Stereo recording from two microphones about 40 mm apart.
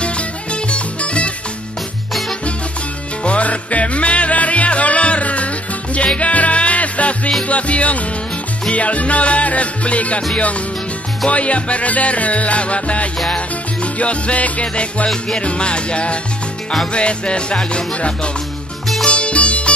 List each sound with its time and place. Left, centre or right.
0.0 s music: left
3.3 s music: left
11.2 s music: left